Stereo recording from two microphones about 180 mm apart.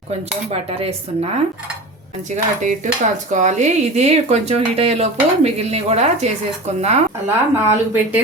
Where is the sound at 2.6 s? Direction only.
45° right (ahead or behind).